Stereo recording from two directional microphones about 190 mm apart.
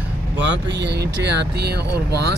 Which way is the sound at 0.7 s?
60° right (ahead or behind).